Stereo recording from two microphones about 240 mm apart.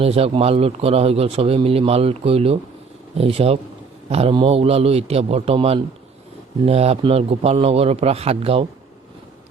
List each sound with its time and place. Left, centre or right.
0.0 s speech: right